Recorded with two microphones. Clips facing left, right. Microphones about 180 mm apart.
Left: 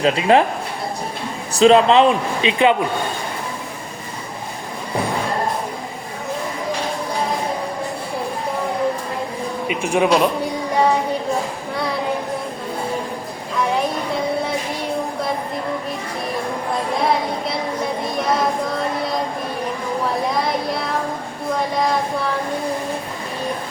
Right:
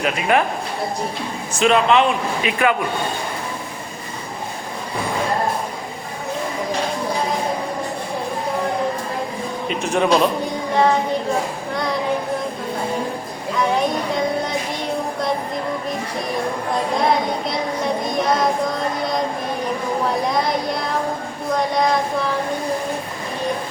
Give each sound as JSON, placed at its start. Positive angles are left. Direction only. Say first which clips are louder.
{"t": 0.0, "sound": "a man's voice", "louder": "left 4 dB", "side_deg": 30}
{"t": 1.5, "sound": "a man's voice", "louder": "left 4 dB", "side_deg": 30}
{"t": 9.6, "sound": "speech", "louder": "left 1 dB", "side_deg": 10}